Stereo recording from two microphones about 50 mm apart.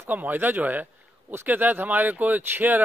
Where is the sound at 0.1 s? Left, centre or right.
Right.